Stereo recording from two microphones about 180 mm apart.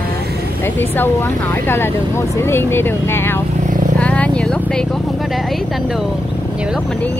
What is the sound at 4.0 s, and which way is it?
Vehicle, 5° left (ahead or behind).